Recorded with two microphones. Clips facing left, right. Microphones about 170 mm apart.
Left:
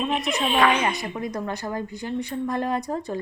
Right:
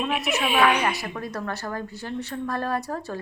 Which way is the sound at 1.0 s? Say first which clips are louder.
Left 2 dB; 15° left (ahead or behind).